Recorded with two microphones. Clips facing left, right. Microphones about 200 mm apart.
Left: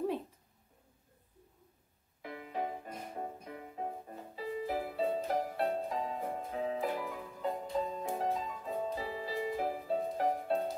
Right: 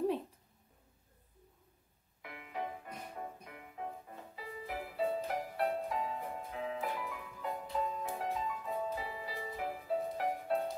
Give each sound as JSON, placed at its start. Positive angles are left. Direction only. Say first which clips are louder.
{"t": 2.2, "sound": "music", "louder": "left 4 dB", "side_deg": 30}